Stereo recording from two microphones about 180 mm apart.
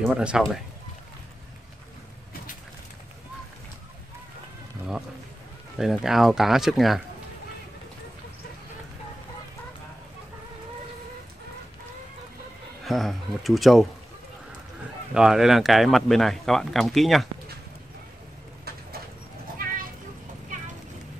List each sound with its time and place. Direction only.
0.0 s speech: 5° right (ahead or behind)
5.8 s speech: centre (ahead or behind)
12.8 s speech: centre (ahead or behind)
15.1 s speech: centre (ahead or behind)
19.6 s a sound: 50° right (ahead or behind)